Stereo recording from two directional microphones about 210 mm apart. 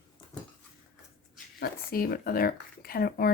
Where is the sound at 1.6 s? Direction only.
45° left (ahead or behind).